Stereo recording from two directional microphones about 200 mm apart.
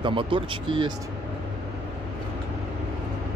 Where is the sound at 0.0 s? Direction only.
25° right (ahead or behind).